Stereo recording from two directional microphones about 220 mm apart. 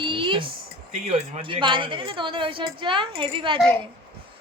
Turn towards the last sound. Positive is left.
turn(degrees=-20)  # may be behind; listen again after turning